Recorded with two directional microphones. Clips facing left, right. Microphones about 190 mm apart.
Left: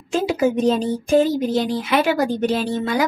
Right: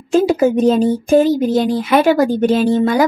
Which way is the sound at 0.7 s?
50° right (ahead or behind).